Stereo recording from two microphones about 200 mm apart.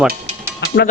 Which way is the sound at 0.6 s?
50° left (ahead or behind).